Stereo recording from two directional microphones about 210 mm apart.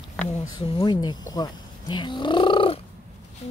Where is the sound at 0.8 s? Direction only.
20° left (ahead or behind).